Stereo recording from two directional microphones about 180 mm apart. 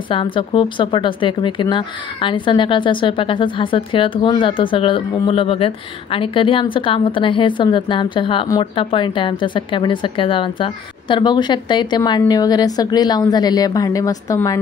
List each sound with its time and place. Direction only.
0.1 s a woman's voice: 30° left (ahead or behind)